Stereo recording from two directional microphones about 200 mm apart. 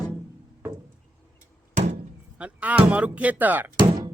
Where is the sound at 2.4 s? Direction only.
5° right (ahead or behind).